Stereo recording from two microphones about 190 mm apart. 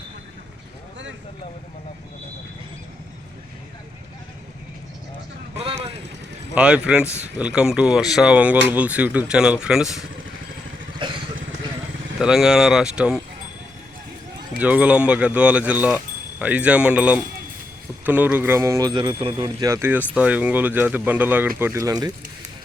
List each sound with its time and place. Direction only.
5.5 s vehicle: 35° right (ahead or behind)
6.5 s speech: 5° right (ahead or behind)
11.0 s vehicle: 25° right (ahead or behind)
12.2 s speech: 5° right (ahead or behind)
14.6 s speech: 5° right (ahead or behind)